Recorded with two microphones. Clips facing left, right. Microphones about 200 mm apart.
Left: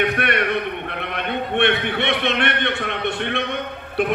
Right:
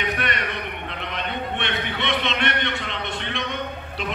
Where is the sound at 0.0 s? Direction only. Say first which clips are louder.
Left 6 dB; 60° left (ahead or behind).